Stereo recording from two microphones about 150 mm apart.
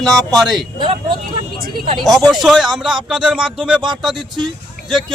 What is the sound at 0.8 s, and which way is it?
Speech, 35° right (ahead or behind).